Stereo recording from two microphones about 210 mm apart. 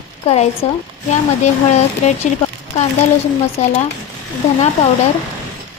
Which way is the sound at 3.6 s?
35° left (ahead or behind).